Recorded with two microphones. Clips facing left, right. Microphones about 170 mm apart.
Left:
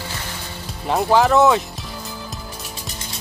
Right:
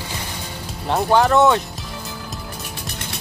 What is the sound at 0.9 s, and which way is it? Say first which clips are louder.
Speech: even; centre (ahead or behind).